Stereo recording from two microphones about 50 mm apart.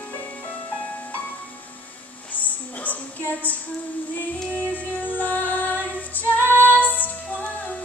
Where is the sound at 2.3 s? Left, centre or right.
Left.